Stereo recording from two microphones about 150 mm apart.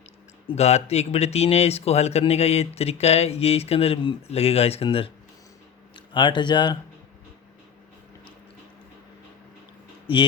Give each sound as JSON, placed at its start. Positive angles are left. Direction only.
{"t": 0.4, "sound": "speech", "side_deg": 45}
{"t": 6.1, "sound": "speech", "side_deg": 30}